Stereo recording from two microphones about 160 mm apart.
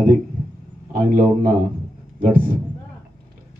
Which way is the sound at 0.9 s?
55° right (ahead or behind).